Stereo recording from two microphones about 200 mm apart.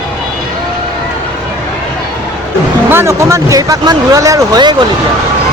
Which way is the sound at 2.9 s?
15° right (ahead or behind).